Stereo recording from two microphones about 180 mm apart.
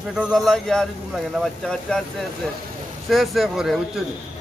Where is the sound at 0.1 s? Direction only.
Centre (ahead or behind).